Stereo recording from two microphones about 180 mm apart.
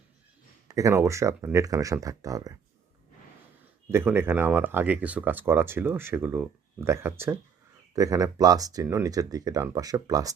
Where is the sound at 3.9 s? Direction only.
15° right (ahead or behind).